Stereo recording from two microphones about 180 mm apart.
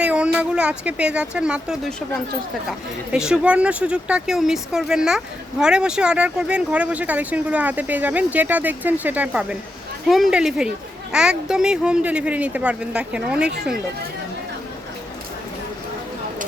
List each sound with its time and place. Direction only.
0.0 s speech: 5° right (ahead or behind)